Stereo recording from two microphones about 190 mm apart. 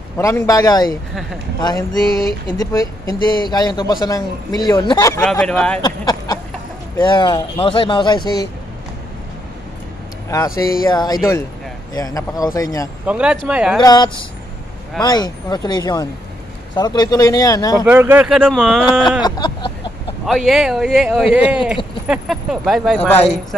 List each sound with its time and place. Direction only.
0.2 s speech: 15° left (ahead or behind)
5.4 s speech: 5° left (ahead or behind)
5.8 s a sound: 20° left (ahead or behind)
7.0 s speech: 25° left (ahead or behind)
10.3 s speech: 15° left (ahead or behind)
13.0 s speech: 5° right (ahead or behind)
13.7 s speech: 25° left (ahead or behind)
17.8 s speech: 10° right (ahead or behind)
19.2 s a sound: 20° left (ahead or behind)
20.2 s speech: centre (ahead or behind)